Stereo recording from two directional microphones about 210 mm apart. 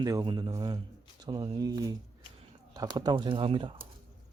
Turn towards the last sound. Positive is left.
turn(degrees=-25)  # may be behind; listen again after turning